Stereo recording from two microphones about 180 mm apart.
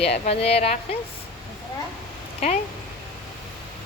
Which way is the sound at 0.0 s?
35° left (ahead or behind).